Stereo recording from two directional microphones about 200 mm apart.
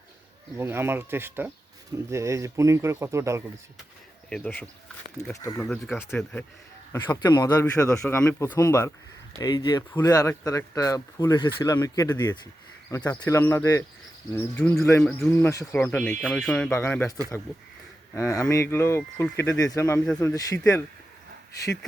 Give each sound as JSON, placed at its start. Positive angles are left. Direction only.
{"t": 0.5, "sound": "speech", "side_deg": -10}
{"t": 4.3, "sound": "speech", "side_deg": 5}
{"t": 5.6, "sound": "speech", "side_deg": 0}